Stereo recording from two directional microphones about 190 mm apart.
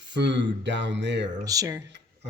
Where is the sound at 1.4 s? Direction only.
15° right (ahead or behind).